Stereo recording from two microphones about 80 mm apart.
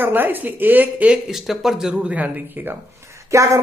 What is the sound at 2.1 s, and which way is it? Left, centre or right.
Speech, right.